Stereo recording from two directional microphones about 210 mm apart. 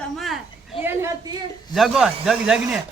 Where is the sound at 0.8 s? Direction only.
10° right (ahead or behind).